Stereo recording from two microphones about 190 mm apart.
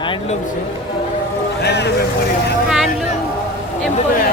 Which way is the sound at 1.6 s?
60° left (ahead or behind).